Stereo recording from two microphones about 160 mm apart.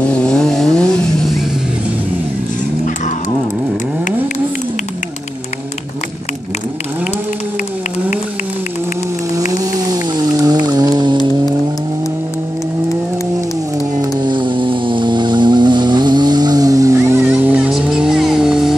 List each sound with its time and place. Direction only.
0.0 s chainsaw: 5° left (ahead or behind)
10.4 s vehicle: 20° right (ahead or behind)
14.2 s vehicle: 30° right (ahead or behind); by 18.8 s 5° right (ahead or behind)